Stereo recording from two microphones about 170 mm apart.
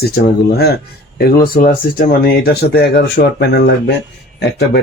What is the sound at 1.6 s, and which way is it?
Speech, 55° left (ahead or behind).